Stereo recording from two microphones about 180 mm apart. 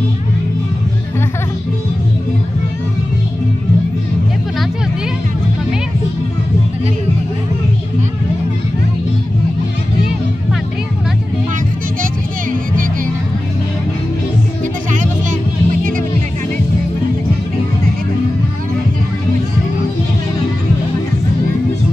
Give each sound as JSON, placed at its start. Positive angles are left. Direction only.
{"t": 14.9, "sound": "music", "side_deg": -45}